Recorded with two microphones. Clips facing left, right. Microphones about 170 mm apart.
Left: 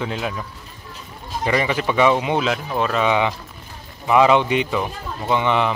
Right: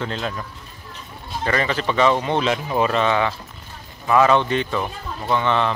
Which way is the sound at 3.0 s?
15° left (ahead or behind).